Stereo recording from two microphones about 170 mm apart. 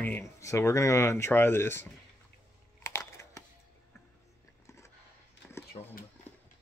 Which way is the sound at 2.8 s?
15° left (ahead or behind).